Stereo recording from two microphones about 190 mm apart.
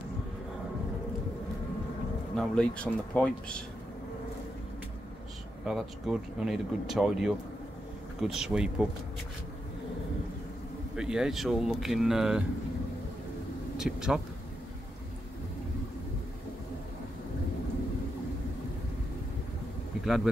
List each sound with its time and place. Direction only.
2.3 s speech: 5° left (ahead or behind)
5.7 s speech: centre (ahead or behind)
11.0 s speech: 5° right (ahead or behind)
13.7 s speech: 5° right (ahead or behind)